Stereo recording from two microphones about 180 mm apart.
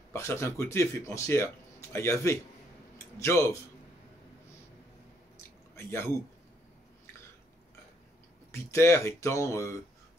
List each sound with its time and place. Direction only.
0.1 s speech: 15° left (ahead or behind)
5.8 s speech: 15° left (ahead or behind)
8.5 s speech: 15° left (ahead or behind)